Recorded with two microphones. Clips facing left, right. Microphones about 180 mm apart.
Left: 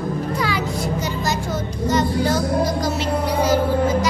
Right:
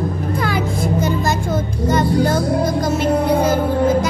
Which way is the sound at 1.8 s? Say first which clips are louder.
Right 3 dB; 55° right (ahead or behind).